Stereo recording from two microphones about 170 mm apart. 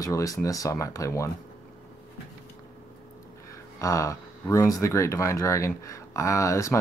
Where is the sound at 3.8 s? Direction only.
20° left (ahead or behind).